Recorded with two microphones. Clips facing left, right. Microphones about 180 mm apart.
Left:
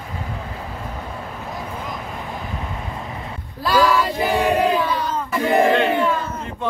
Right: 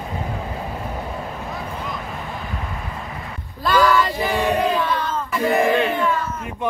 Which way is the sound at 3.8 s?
Centre (ahead or behind).